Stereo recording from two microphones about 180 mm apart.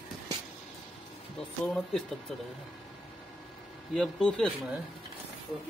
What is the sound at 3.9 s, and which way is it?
Speech, centre (ahead or behind).